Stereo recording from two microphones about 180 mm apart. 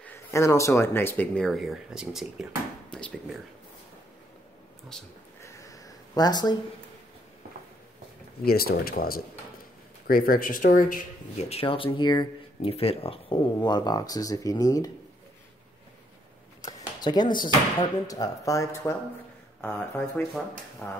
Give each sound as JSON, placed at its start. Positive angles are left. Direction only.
{"t": 0.0, "sound": "speech", "side_deg": 15}
{"t": 4.9, "sound": "speech", "side_deg": 5}
{"t": 5.4, "sound": "a sound", "side_deg": 20}
{"t": 8.5, "sound": "speech", "side_deg": 60}
{"t": 11.4, "sound": "speech", "side_deg": 30}
{"t": 16.6, "sound": "a sound", "side_deg": 20}
{"t": 18.0, "sound": "speech", "side_deg": 20}